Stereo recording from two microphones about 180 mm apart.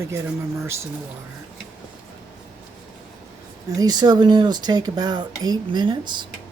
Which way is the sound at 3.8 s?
20° right (ahead or behind).